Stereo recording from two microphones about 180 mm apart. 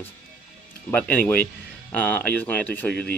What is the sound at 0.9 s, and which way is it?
Speech, 10° left (ahead or behind).